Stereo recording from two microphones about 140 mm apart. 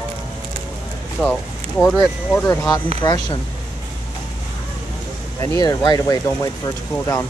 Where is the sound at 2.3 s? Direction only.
15° left (ahead or behind).